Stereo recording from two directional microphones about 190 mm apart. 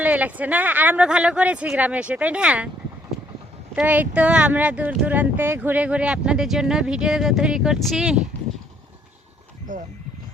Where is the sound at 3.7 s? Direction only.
10° right (ahead or behind).